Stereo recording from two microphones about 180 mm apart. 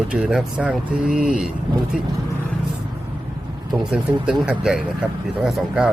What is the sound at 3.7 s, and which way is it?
Speech, 5° right (ahead or behind).